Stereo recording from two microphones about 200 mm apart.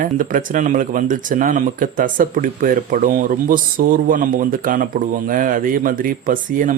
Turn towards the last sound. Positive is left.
turn(degrees=-40)  # may be behind; listen again after turning